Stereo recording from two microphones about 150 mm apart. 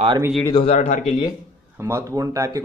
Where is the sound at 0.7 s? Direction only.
50° left (ahead or behind).